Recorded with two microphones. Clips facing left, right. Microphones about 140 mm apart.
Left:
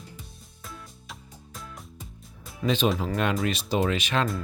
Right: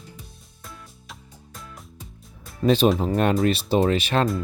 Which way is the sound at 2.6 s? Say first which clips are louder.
Right 6 dB; 40° right (ahead or behind).